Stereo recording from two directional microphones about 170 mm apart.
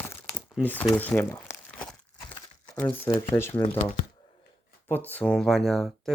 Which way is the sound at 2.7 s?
10° left (ahead or behind).